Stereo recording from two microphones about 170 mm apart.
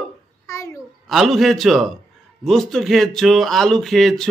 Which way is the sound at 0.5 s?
15° left (ahead or behind).